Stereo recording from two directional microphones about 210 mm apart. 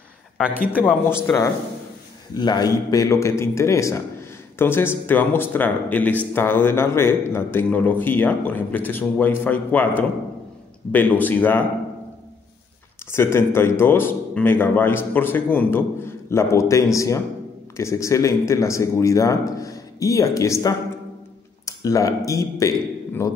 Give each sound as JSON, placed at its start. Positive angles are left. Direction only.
{"t": 0.7, "sound": "a man's voice", "side_deg": 10}
{"t": 13.1, "sound": "a man's voice", "side_deg": 10}